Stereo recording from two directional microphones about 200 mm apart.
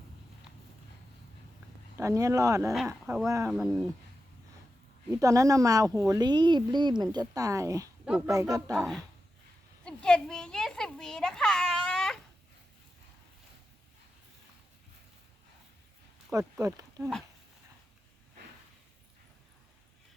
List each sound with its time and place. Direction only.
2.0 s speech: 15° right (ahead or behind)
2.7 s speech: 5° right (ahead or behind)
3.2 s speech: 15° right (ahead or behind)
3.5 s speech: centre (ahead or behind)
5.1 s speech: 15° right (ahead or behind)
9.8 s a sound: 5° left (ahead or behind)
16.3 s speech: 15° right (ahead or behind)